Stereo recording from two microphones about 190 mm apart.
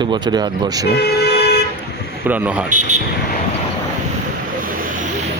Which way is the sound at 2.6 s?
40° right (ahead or behind).